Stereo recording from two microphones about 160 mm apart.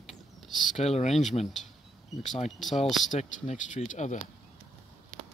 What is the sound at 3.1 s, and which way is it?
Speech, 45° left (ahead or behind).